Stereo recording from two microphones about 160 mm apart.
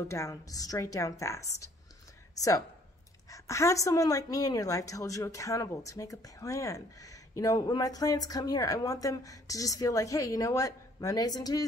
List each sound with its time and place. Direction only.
0.1 s a woman's voice: 20° left (ahead or behind)